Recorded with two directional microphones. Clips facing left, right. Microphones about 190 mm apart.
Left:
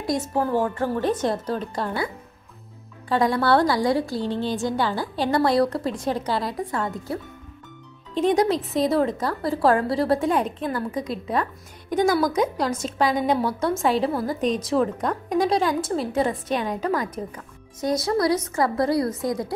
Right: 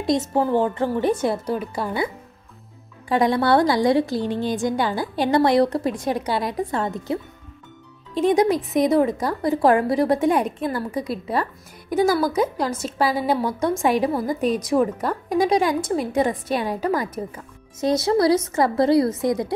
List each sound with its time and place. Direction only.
0.0 s a woman's voice: 20° right (ahead or behind)
3.1 s a woman's voice: 20° right (ahead or behind)
8.1 s a woman's voice: 10° right (ahead or behind)
17.7 s a woman's voice: 25° right (ahead or behind)